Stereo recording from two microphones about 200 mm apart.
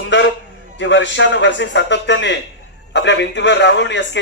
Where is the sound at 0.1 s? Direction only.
65° left (ahead or behind).